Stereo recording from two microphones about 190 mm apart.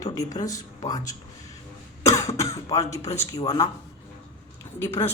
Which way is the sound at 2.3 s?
15° left (ahead or behind).